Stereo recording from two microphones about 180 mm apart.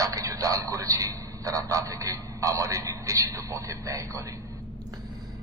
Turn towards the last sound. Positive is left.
turn(degrees=-15)  # may be behind; listen again after turning